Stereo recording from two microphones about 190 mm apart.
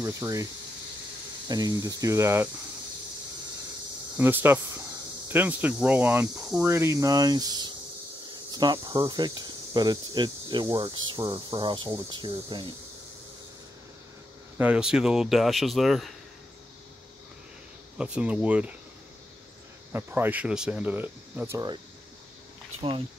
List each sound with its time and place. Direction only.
0.0 s speech: 20° right (ahead or behind)
1.5 s speech: 20° right (ahead or behind)
4.2 s speech: 10° right (ahead or behind); by 12.7 s 25° right (ahead or behind)
14.6 s speech: 5° right (ahead or behind)
17.9 s speech: 5° right (ahead or behind)
19.9 s speech: 10° right (ahead or behind)
22.8 s speech: 30° right (ahead or behind)